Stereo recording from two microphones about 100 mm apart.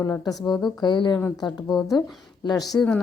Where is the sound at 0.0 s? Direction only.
35° left (ahead or behind).